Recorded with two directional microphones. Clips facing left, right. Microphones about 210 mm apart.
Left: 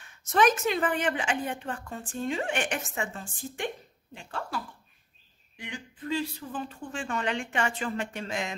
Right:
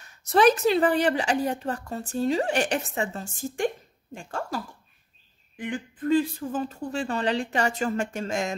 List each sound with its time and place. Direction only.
0.0 s speech: 35° right (ahead or behind)